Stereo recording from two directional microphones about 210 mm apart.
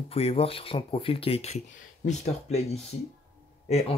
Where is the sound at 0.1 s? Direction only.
25° left (ahead or behind).